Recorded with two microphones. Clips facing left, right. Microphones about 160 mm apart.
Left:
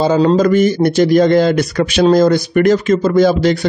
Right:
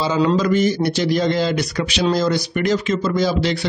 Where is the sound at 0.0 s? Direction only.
50° left (ahead or behind).